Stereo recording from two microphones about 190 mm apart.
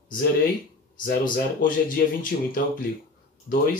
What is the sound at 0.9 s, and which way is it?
Speech, 45° left (ahead or behind).